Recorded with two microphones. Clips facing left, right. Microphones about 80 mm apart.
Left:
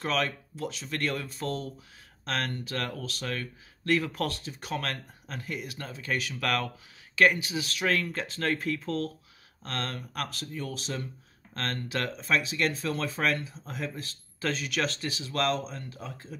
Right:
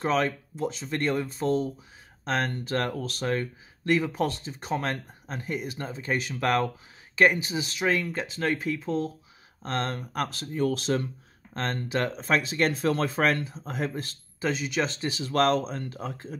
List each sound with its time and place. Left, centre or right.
0.0 s speech: right
2.6 s speech: right
3.8 s speech: centre
9.6 s speech: right
11.5 s speech: right
12.2 s speech: right
13.7 s speech: right
14.4 s speech: centre
15.2 s speech: right